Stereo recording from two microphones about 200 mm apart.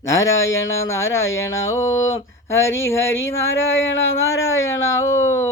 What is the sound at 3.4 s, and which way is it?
Speech, 75° left (ahead or behind).